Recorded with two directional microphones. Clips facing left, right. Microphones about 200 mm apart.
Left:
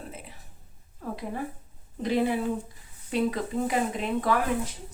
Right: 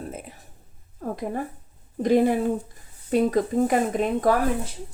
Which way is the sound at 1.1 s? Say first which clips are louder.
Right 4 dB; 45° right (ahead or behind).